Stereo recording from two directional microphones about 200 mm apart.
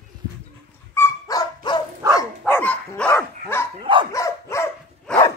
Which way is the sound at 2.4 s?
10° left (ahead or behind).